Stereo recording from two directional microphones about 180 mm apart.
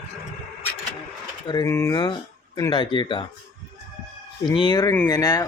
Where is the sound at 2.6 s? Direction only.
25° left (ahead or behind).